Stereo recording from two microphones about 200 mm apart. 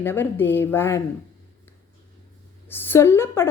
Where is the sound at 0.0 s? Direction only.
10° left (ahead or behind).